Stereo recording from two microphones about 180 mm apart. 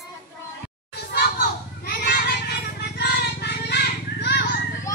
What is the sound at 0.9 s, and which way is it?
Children playing, 60° left (ahead or behind).